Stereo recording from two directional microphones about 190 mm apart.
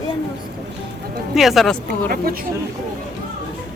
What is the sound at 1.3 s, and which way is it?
Speech, centre (ahead or behind).